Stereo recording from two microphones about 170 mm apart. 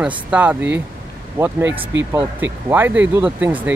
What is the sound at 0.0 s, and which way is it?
Speech, 10° right (ahead or behind).